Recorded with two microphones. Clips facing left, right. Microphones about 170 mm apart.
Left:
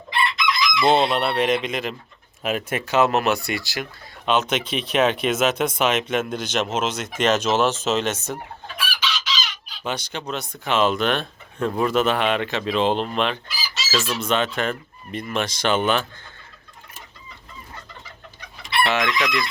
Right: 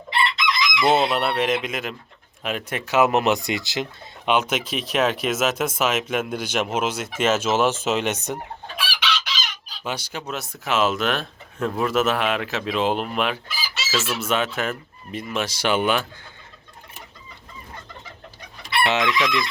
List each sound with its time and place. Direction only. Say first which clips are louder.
0.8 s speech: left 1 dB; 5° right (ahead or behind)
3.1 s speech: right 1 dB; 20° right (ahead or behind)
4.3 s speech: even; 10° right (ahead or behind)
8.7 s chicken: right 1 dB; 65° right (ahead or behind)
9.8 s speech: left 2 dB; 10° right (ahead or behind)
18.8 s chicken: even; 15° right (ahead or behind)
19.2 s speech: right 1 dB; 10° right (ahead or behind)